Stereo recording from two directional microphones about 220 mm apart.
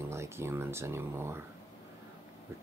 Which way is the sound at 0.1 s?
10° right (ahead or behind).